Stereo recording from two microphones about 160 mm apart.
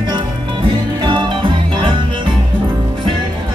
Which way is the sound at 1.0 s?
30° right (ahead or behind).